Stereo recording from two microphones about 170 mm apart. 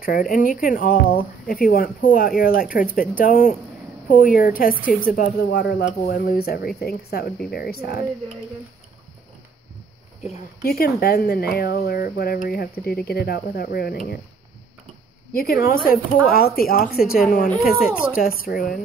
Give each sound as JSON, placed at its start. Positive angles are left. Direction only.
{"t": 0.0, "sound": "speech", "side_deg": 55}
{"t": 5.5, "sound": "speech", "side_deg": 80}
{"t": 5.9, "sound": "speech", "side_deg": 55}
{"t": 10.6, "sound": "speech", "side_deg": 65}
{"t": 15.3, "sound": "speech", "side_deg": 65}